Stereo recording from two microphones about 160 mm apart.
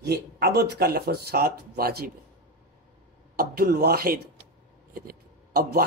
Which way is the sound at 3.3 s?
75° right (ahead or behind).